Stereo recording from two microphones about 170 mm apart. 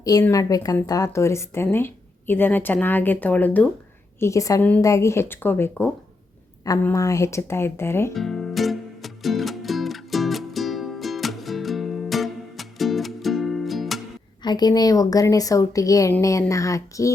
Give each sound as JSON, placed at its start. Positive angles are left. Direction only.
{"t": 0.0, "sound": "a woman's voice", "side_deg": 20}
{"t": 8.1, "sound": "music", "side_deg": 0}
{"t": 14.4, "sound": "a woman's voice", "side_deg": 25}